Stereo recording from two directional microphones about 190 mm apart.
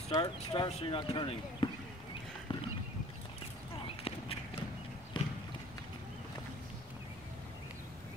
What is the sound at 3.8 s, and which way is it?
Clip-clop, 30° left (ahead or behind).